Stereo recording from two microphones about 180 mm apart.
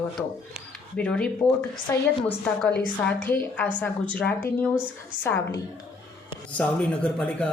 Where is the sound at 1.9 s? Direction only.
15° left (ahead or behind).